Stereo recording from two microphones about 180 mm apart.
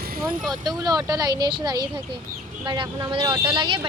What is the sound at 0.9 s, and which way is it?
Speech, 20° right (ahead or behind).